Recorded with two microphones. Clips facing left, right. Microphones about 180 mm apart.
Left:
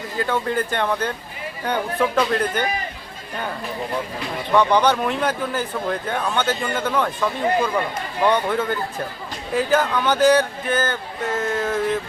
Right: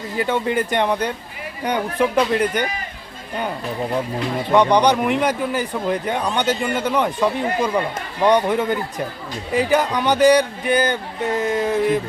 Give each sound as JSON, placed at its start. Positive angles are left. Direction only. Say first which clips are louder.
{"t": 0.2, "sound": "speech", "louder": "right 2 dB", "side_deg": -15}
{"t": 4.5, "sound": "speech", "louder": "right 2 dB", "side_deg": -15}